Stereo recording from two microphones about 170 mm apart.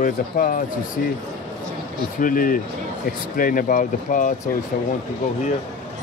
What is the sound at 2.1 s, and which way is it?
Speech, 55° left (ahead or behind).